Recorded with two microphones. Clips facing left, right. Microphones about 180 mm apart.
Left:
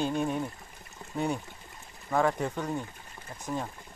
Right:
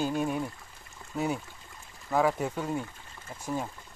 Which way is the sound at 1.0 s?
25° left (ahead or behind).